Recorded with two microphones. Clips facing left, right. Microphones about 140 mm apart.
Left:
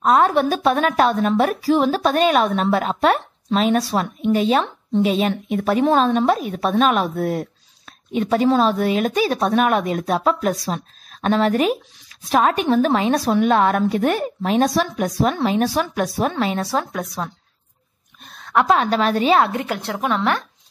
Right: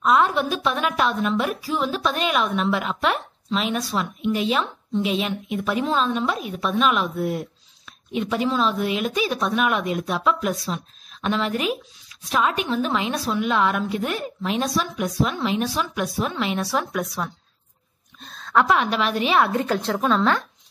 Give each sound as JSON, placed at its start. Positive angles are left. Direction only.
{"t": 0.0, "sound": "a woman's voice", "side_deg": 45}
{"t": 8.1, "sound": "a woman's voice", "side_deg": 40}
{"t": 18.5, "sound": "a woman's voice", "side_deg": 20}
{"t": 18.8, "sound": "speech", "side_deg": 40}
{"t": 19.9, "sound": "a woman's voice", "side_deg": 15}